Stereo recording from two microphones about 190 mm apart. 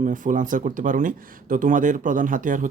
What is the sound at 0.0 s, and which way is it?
Speech, 45° right (ahead or behind).